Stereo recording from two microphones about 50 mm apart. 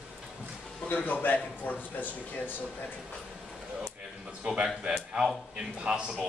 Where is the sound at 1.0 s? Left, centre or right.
Left.